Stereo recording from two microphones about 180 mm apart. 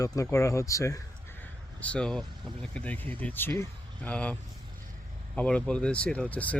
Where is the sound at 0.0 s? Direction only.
20° left (ahead or behind).